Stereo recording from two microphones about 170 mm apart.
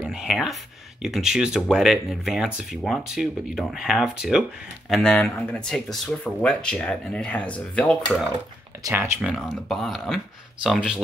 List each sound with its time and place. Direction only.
0.0 s speech: 5° right (ahead or behind)
8.8 s speech: 15° right (ahead or behind)
9.2 s speech: centre (ahead or behind)